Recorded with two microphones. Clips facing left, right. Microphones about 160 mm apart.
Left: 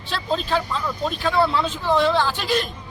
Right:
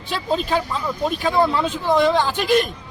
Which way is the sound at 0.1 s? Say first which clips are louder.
Right 2 dB; 10° right (ahead or behind).